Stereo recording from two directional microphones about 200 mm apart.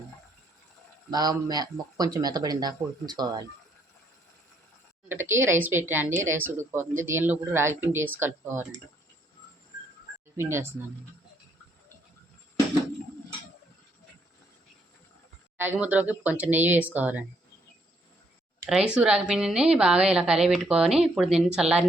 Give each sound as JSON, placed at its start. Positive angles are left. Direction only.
{"t": 1.1, "sound": "speech", "side_deg": -20}
{"t": 5.0, "sound": "speech", "side_deg": -10}
{"t": 10.3, "sound": "speech", "side_deg": -15}
{"t": 15.5, "sound": "speech", "side_deg": -10}
{"t": 18.9, "sound": "speech", "side_deg": -5}